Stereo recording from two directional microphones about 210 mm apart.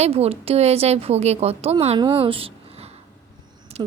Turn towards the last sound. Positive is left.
turn(degrees=-30)  # may be behind; listen again after turning